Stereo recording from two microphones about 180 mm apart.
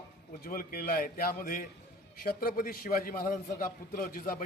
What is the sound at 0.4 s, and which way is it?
A man's voice, 55° left (ahead or behind).